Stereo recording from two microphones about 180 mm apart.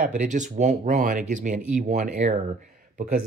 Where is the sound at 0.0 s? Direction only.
45° right (ahead or behind).